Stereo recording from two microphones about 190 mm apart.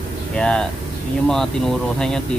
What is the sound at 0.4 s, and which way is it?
Speech, 5° left (ahead or behind).